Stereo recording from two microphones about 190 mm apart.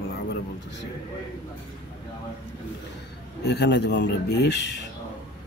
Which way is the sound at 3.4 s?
60° left (ahead or behind).